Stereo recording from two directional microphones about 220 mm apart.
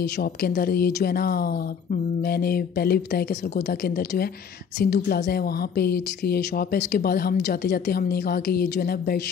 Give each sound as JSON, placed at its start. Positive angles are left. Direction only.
{"t": 0.0, "sound": "a woman's voice", "side_deg": 45}